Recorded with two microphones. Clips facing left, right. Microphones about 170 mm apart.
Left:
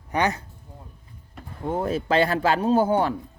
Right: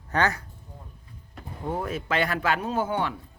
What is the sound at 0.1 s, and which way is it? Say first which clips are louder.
Speech: left 1 dB; 20° left (ahead or behind).